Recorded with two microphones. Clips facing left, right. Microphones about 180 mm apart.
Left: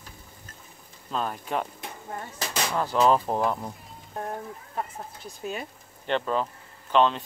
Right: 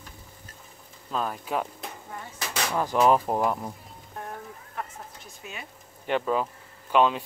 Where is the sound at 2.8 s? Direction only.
15° right (ahead or behind).